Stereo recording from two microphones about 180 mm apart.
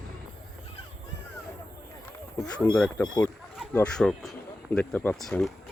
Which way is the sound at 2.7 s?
10° left (ahead or behind).